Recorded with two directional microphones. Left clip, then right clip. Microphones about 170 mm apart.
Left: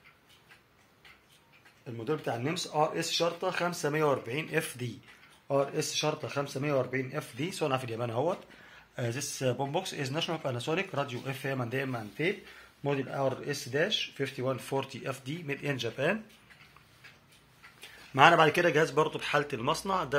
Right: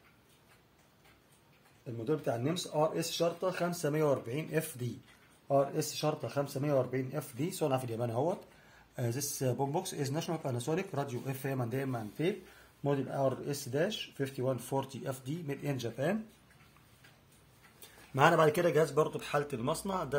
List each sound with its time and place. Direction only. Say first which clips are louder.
2.0 s speech: left 1 dB; 5° right (ahead or behind)
17.7 s speech: left 7 dB; 5° left (ahead or behind)